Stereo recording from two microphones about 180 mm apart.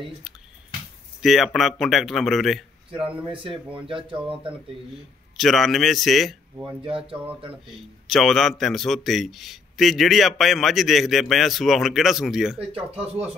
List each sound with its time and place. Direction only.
1.2 s a man's voice: centre (ahead or behind)
3.8 s speech: 30° right (ahead or behind)
5.4 s a man's voice: centre (ahead or behind)
6.8 s speech: 30° right (ahead or behind)
7.6 s a man's voice: centre (ahead or behind)
12.5 s speech: 30° right (ahead or behind)